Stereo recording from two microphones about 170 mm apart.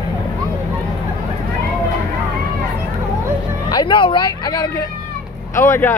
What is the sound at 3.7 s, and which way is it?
Speech, 25° left (ahead or behind).